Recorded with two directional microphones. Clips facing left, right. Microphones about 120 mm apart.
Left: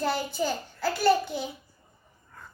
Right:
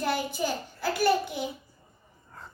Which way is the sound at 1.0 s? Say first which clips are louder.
Left 2 dB; 15° right (ahead or behind).